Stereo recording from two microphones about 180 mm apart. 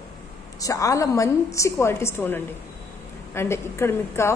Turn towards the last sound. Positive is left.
turn(degrees=15)  # may be behind; listen again after turning